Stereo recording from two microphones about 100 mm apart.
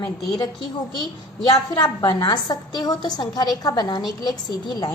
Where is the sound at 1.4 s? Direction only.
50° left (ahead or behind).